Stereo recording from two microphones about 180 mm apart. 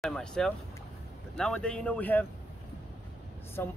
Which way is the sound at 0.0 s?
5° left (ahead or behind).